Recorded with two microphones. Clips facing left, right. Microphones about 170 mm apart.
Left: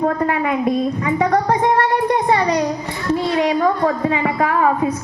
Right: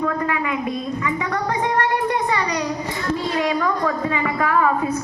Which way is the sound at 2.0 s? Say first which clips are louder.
Left 5 dB; 40° left (ahead or behind).